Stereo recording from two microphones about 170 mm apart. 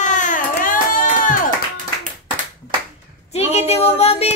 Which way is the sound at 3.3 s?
40° left (ahead or behind).